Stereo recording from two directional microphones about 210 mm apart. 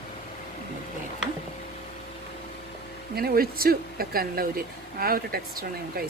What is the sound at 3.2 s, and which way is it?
Speech, 45° right (ahead or behind).